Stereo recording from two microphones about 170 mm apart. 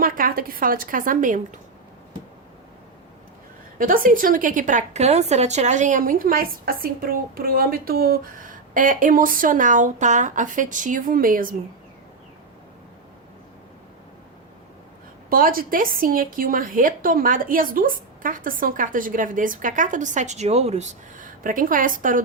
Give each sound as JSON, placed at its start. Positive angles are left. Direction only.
{"t": 0.0, "sound": "a woman's voice", "side_deg": -55}
{"t": 3.8, "sound": "a woman's voice", "side_deg": -55}
{"t": 15.3, "sound": "a woman's voice", "side_deg": -55}